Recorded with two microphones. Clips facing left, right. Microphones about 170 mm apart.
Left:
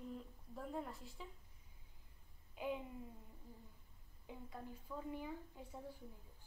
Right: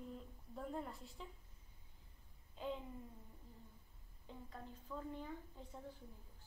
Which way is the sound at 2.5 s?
10° left (ahead or behind).